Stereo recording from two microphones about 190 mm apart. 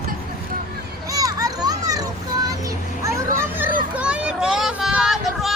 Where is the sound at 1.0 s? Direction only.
20° right (ahead or behind).